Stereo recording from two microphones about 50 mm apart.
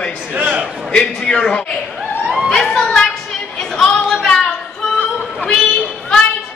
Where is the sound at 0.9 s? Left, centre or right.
Centre.